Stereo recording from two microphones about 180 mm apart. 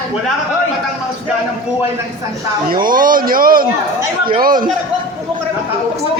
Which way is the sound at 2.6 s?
50° right (ahead or behind).